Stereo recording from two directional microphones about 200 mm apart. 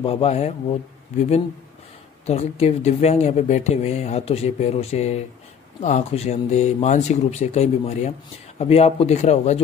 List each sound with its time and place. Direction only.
0.0 s speech: 30° left (ahead or behind)